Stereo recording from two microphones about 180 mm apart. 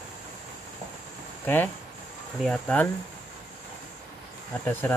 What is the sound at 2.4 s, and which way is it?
Speech, 5° left (ahead or behind).